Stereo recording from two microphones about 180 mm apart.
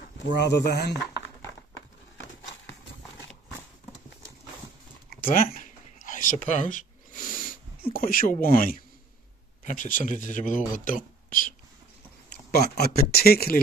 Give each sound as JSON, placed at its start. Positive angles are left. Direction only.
{"t": 0.3, "sound": "speech", "side_deg": 70}
{"t": 5.2, "sound": "a sound", "side_deg": 50}
{"t": 7.9, "sound": "speech", "side_deg": 50}
{"t": 12.4, "sound": "speech", "side_deg": 60}